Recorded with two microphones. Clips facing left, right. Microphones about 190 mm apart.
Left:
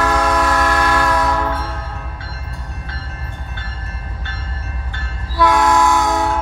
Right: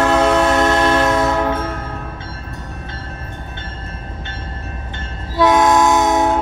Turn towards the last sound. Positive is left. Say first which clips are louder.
# right 3 dB
turn(degrees=-20)  # may be behind; listen again after turning